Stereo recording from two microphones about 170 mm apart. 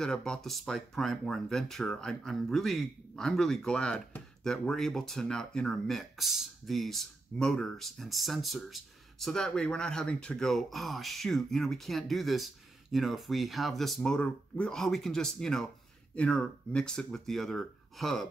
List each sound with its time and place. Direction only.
0.0 s speech: 5° left (ahead or behind)